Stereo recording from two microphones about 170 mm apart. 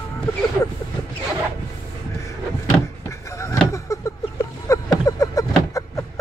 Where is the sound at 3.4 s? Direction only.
20° left (ahead or behind).